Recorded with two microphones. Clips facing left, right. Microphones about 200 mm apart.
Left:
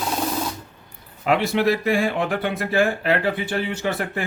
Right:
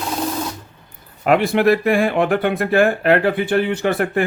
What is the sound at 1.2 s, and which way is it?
Speech, 55° right (ahead or behind).